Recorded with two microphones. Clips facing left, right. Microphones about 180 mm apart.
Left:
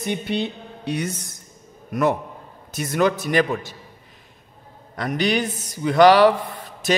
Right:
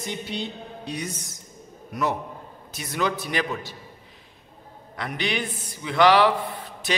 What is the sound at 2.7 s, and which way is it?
A man's voice, 50° left (ahead or behind).